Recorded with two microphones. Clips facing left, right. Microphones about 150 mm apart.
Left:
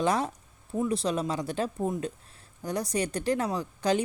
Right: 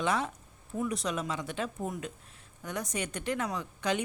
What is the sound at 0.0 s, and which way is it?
Speech, 35° left (ahead or behind).